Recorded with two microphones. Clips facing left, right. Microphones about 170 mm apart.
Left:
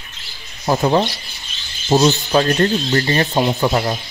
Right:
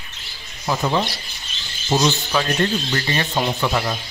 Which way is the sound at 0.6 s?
40° left (ahead or behind).